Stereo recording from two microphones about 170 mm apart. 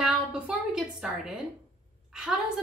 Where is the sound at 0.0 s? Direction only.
5° right (ahead or behind).